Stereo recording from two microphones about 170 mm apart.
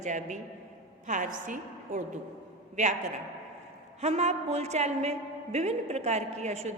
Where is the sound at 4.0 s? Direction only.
40° right (ahead or behind).